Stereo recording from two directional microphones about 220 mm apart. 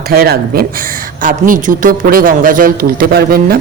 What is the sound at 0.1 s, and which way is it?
Speech, 45° right (ahead or behind).